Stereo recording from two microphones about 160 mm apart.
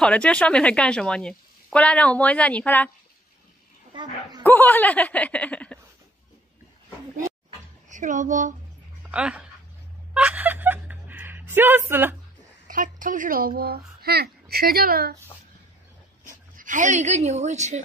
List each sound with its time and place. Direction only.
0.0 s speech: 5° left (ahead or behind)
3.9 s speech: 30° right (ahead or behind)
4.4 s speech: 10° left (ahead or behind)
7.9 s a woman's voice: 50° right (ahead or behind)
9.0 s speech: 5° right (ahead or behind)
10.1 s a sound: 5° right (ahead or behind)
12.6 s a woman's voice: 55° right (ahead or behind)
13.6 s speech: 75° right (ahead or behind)
16.5 s a woman's voice: 55° right (ahead or behind)